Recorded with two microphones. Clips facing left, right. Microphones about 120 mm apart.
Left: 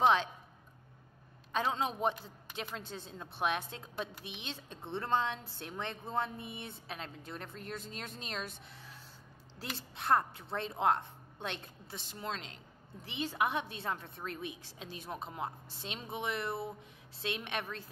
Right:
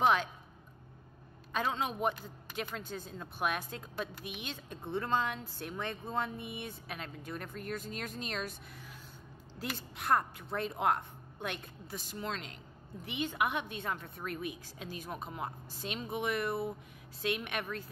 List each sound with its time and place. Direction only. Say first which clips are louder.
0.0 s a woman's voice: left 1 dB; 25° left (ahead or behind)
1.5 s a woman's voice: left 1 dB; 30° left (ahead or behind)